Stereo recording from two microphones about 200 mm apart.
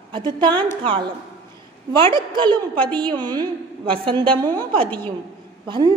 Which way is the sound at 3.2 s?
20° right (ahead or behind).